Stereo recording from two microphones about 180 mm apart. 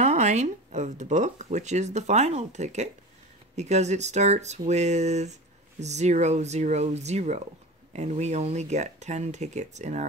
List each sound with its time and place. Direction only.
0.0 s speech: 40° right (ahead or behind)